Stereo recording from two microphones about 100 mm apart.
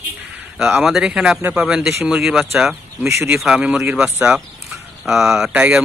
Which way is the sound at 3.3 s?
10° right (ahead or behind).